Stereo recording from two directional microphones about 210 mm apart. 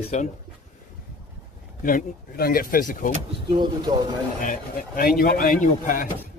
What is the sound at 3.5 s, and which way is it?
Speech, 20° right (ahead or behind).